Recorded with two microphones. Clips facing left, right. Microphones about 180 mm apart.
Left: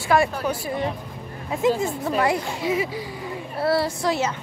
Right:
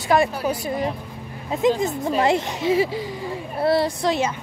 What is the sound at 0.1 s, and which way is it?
Speech, 20° right (ahead or behind).